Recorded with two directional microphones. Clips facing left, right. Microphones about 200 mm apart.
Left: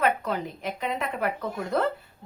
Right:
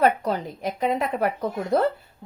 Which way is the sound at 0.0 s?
35° right (ahead or behind).